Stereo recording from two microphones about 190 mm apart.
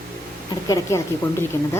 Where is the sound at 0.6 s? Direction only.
20° left (ahead or behind).